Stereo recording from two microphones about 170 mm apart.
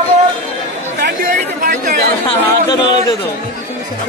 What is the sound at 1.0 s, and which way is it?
Chatter, 60° right (ahead or behind).